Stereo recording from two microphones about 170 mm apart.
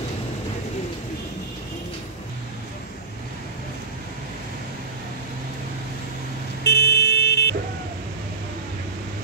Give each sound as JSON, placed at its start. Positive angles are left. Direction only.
{"t": 6.6, "sound": "vehicle", "side_deg": 75}